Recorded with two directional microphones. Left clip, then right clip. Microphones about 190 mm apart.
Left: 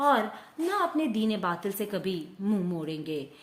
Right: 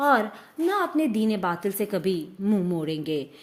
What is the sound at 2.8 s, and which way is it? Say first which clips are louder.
Speech: right 6 dB; 35° right (ahead or behind).